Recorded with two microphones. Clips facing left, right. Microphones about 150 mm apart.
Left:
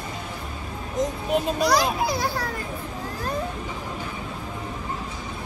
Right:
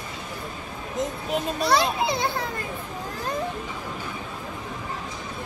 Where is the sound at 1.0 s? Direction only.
Centre (ahead or behind).